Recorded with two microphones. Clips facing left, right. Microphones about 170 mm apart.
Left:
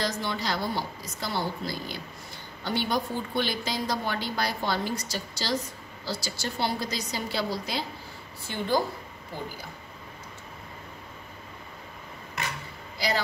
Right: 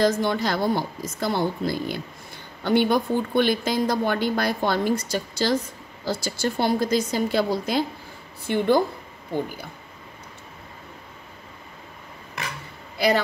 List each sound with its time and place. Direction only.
0.0 s a woman's voice: 50° right (ahead or behind)